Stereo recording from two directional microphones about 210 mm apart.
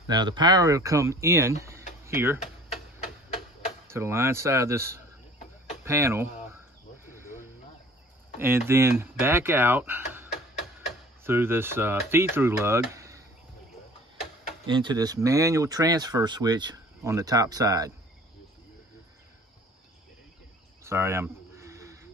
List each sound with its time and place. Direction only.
0.0 s speech: 20° right (ahead or behind)
3.9 s speech: 15° right (ahead or behind)
8.4 s speech: 10° right (ahead or behind)
11.2 s speech: 10° right (ahead or behind)
14.7 s speech: 20° right (ahead or behind)
20.8 s a sound: 10° right (ahead or behind)